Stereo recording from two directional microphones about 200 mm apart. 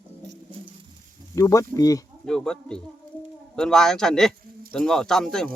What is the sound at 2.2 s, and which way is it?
Speech, 5° left (ahead or behind).